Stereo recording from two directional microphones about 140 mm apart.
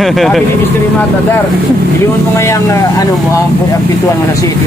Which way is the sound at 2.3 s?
20° left (ahead or behind).